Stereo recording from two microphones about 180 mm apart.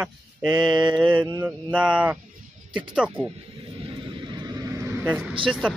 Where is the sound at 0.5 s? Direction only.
25° right (ahead or behind).